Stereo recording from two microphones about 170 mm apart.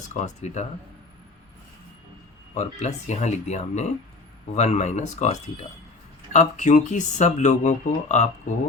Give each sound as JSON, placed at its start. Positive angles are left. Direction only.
{"t": 0.1, "sound": "speech", "side_deg": 45}
{"t": 2.6, "sound": "speech", "side_deg": 40}